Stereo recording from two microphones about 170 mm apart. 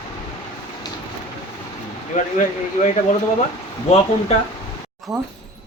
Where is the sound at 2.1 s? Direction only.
50° left (ahead or behind).